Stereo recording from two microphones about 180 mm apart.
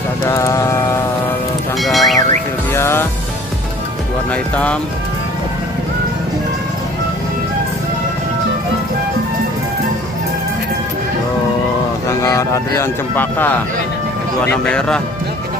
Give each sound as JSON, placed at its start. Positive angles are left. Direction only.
{"t": 0.2, "sound": "mantra", "side_deg": 15}
{"t": 1.8, "sound": "music", "side_deg": 0}
{"t": 2.7, "sound": "music", "side_deg": 15}
{"t": 12.1, "sound": "speech", "side_deg": 15}